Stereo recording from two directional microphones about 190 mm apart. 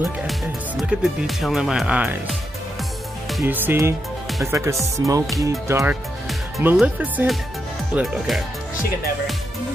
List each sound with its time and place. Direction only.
0.3 s speech: centre (ahead or behind)